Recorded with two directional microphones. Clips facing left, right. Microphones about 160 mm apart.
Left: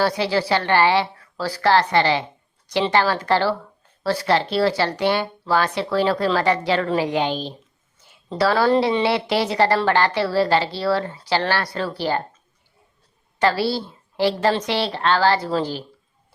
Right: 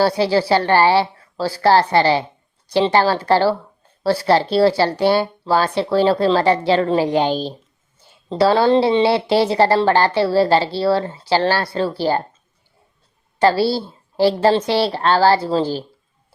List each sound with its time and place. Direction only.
0.0 s speech: 30° right (ahead or behind)
13.4 s speech: 30° right (ahead or behind)